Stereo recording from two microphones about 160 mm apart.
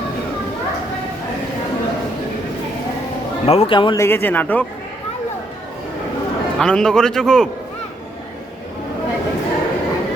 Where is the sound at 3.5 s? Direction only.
35° left (ahead or behind).